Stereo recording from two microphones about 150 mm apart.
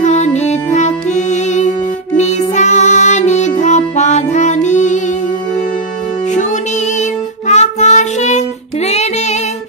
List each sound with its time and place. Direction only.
0.0 s music: 50° left (ahead or behind)
7.0 s music: 50° left (ahead or behind)